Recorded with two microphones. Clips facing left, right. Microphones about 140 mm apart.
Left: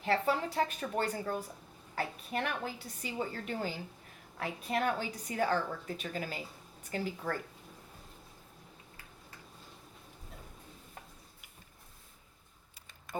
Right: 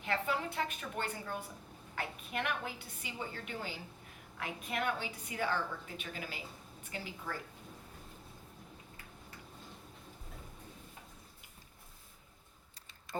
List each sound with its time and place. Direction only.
0.0 s a woman's voice: 35° left (ahead or behind)